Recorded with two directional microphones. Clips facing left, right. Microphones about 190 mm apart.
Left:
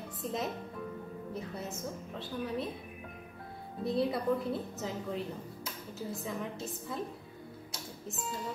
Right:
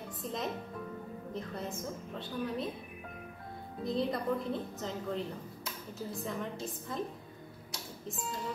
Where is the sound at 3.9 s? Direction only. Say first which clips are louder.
Left 2 dB; 5° left (ahead or behind).